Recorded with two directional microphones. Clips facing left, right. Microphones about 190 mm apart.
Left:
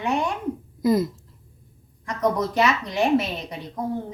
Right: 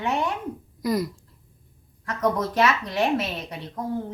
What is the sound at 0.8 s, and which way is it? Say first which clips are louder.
Speech: left 4 dB; 25° left (ahead or behind).